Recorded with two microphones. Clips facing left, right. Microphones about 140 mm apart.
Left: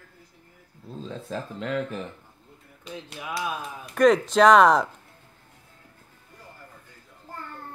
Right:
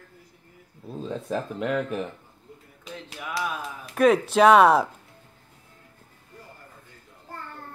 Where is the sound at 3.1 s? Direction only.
Centre (ahead or behind).